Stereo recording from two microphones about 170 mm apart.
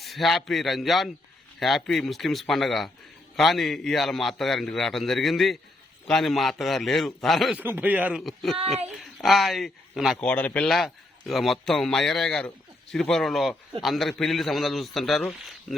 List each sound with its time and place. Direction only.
0.0 s a man's voice: centre (ahead or behind)
7.6 s speech: 10° right (ahead or behind)
8.5 s a child's voice: 40° right (ahead or behind)
9.2 s a man's voice: centre (ahead or behind)
10.2 s a man's voice: 10° left (ahead or behind)